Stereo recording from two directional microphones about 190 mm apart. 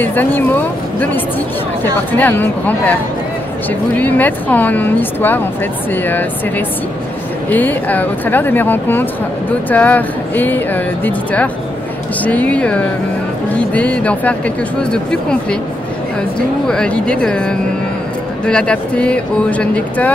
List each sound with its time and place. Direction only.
0.0 s a woman's voice: 10° left (ahead or behind)
4.0 s a woman's voice: 10° left (ahead or behind)
7.5 s a woman's voice: 10° left (ahead or behind)
16.6 s speech: 5° left (ahead or behind)